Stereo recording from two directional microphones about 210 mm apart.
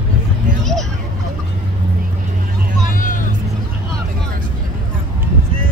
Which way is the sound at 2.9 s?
40° left (ahead or behind).